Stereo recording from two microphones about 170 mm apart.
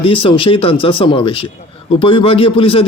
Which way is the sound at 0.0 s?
30° left (ahead or behind).